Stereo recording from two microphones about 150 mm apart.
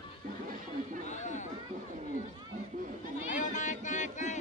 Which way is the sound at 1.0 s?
50° left (ahead or behind).